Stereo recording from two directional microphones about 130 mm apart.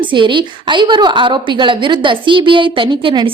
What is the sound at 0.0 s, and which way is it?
A woman's voice, 40° right (ahead or behind).